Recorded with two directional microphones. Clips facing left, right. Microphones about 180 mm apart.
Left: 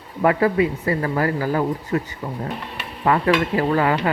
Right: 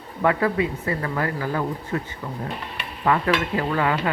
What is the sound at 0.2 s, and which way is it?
Speech, 30° left (ahead or behind).